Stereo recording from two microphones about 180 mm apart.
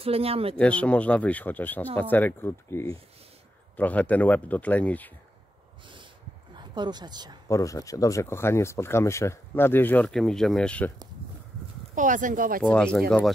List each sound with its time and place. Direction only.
0.0 s speech: 35° right (ahead or behind)
0.6 s speech: 5° left (ahead or behind)
6.5 s speech: 25° right (ahead or behind)
7.4 s speech: 15° left (ahead or behind)
11.9 s speech: 45° right (ahead or behind)
12.6 s speech: 5° left (ahead or behind)